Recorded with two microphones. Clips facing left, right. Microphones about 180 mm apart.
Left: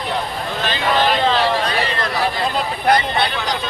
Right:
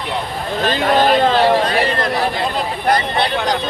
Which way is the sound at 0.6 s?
45° right (ahead or behind).